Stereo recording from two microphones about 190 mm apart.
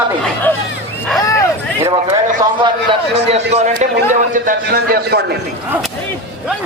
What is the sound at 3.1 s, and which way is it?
A man's voice, 35° right (ahead or behind).